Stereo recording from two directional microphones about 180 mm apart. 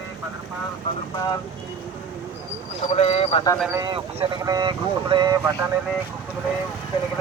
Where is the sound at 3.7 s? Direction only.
25° right (ahead or behind).